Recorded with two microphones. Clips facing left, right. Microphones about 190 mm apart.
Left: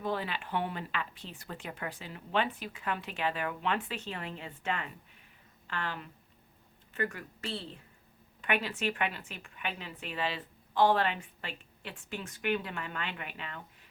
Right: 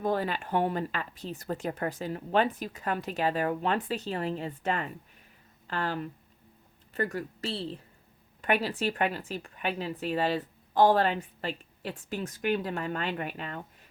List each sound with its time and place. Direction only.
0.0 s a woman's voice: 45° right (ahead or behind)